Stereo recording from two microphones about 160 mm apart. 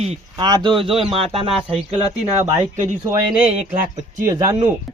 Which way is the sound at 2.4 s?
50° right (ahead or behind).